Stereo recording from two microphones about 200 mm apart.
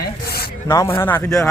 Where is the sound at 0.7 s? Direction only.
15° left (ahead or behind).